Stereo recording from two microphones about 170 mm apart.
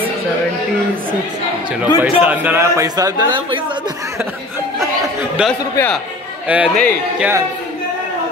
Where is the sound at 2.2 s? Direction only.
10° right (ahead or behind).